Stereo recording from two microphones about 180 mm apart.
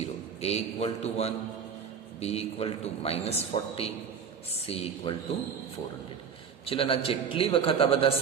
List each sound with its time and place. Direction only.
0.0 s a man's voice: 35° left (ahead or behind)
6.7 s a man's voice: 30° left (ahead or behind)